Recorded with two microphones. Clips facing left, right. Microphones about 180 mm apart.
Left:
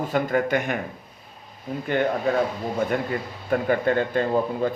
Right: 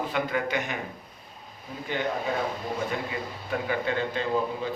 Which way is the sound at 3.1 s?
50° left (ahead or behind).